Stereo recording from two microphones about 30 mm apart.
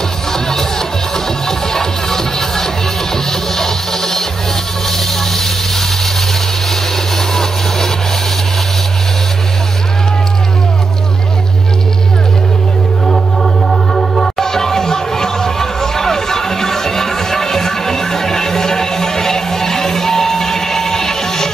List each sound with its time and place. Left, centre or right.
0.3 s music: centre
4.9 s a sound: centre
13.1 s music: centre